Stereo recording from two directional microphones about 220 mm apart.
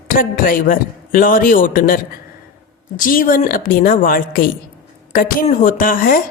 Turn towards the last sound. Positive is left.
turn(degrees=40)  # may be behind; listen again after turning